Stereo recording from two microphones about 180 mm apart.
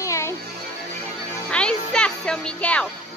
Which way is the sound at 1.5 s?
5° left (ahead or behind).